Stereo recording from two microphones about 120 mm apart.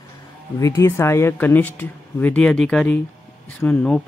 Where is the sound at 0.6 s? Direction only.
25° left (ahead or behind).